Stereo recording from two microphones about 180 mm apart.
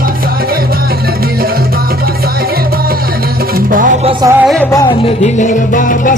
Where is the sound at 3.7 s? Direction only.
50° right (ahead or behind).